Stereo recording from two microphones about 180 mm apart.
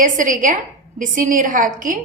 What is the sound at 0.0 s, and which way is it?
A woman's voice, 45° right (ahead or behind).